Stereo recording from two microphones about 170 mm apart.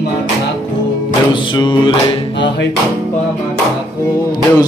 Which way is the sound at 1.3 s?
25° left (ahead or behind).